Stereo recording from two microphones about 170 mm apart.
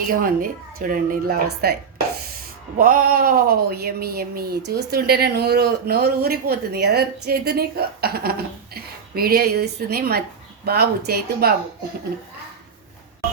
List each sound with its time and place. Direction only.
0.1 s speech: 55° right (ahead or behind)
2.7 s speech: 55° right (ahead or behind)